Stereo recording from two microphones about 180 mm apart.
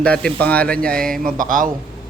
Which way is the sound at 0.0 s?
5° left (ahead or behind).